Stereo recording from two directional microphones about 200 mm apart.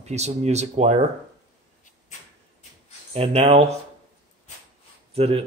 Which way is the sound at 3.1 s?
30° right (ahead or behind).